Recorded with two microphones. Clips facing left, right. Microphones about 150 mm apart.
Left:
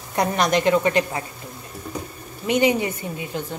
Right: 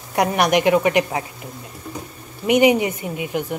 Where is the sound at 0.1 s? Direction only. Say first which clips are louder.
Right 3 dB; 15° right (ahead or behind).